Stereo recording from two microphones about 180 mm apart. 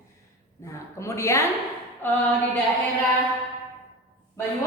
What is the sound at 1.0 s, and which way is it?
A woman's voice, 15° left (ahead or behind).